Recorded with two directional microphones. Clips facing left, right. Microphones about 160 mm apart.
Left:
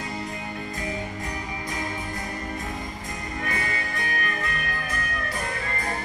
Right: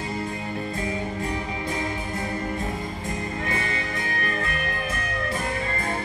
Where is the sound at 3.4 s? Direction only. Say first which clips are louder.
Right 2 dB; 25° right (ahead or behind).